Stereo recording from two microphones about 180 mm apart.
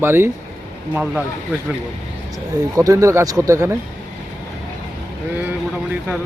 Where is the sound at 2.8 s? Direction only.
15° right (ahead or behind).